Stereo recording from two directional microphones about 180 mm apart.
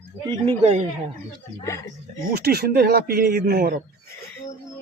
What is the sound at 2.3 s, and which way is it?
Speech, 60° right (ahead or behind).